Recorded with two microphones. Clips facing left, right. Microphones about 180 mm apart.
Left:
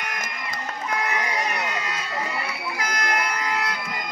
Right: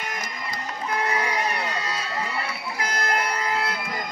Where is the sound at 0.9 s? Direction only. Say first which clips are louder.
Right 1 dB; 30° right (ahead or behind).